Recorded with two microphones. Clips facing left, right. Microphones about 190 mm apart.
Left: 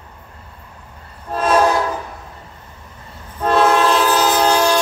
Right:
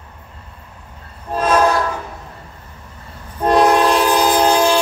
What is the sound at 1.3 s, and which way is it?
Train, 10° right (ahead or behind).